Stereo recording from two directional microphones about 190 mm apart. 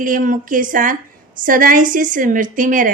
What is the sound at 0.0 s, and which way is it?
A woman's voice, 45° right (ahead or behind).